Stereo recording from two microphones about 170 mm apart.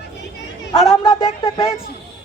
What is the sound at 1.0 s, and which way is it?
Speech, 30° left (ahead or behind).